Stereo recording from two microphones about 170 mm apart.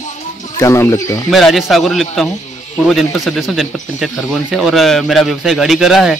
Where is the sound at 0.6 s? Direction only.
20° left (ahead or behind).